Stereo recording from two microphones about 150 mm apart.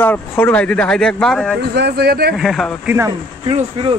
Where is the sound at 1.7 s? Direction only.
90° right.